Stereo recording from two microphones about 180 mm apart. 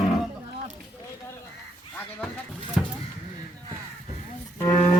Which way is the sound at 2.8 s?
5° right (ahead or behind).